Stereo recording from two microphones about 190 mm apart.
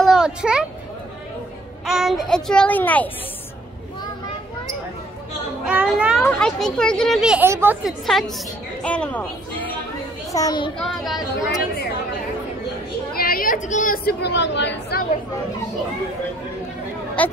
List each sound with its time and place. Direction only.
0.0 s a child's voice: 5° right (ahead or behind)
1.9 s speech: centre (ahead or behind)
5.7 s speech: 5° right (ahead or behind)
10.3 s a child's voice: 20° left (ahead or behind)
10.8 s speech: centre (ahead or behind)
13.1 s speech: 50° left (ahead or behind); by 15.0 s 65° left (ahead or behind)
17.2 s speech: 10° left (ahead or behind)